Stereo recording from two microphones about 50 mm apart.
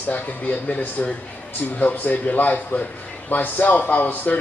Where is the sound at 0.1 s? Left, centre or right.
Left.